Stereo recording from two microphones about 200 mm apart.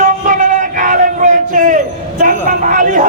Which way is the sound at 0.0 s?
40° right (ahead or behind).